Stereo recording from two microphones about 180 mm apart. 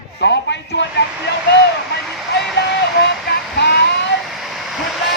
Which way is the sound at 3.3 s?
65° left (ahead or behind).